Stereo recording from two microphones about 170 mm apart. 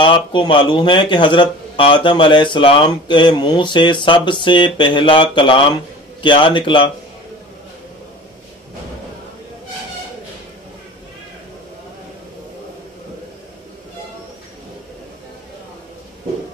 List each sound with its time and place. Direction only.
0.0 s speech: 30° left (ahead or behind)